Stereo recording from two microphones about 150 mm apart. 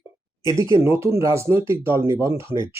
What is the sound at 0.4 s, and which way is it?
Speech, 20° right (ahead or behind).